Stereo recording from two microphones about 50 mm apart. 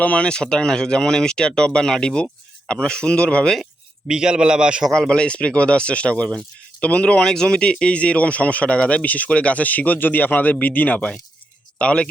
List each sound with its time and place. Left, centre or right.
0.0 s speech: left
0.3 s speech: centre
4.1 s a man's voice: centre
4.9 s speech: centre